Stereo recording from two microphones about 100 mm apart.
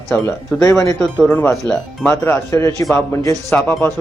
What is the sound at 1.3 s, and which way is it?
Speech, 20° left (ahead or behind).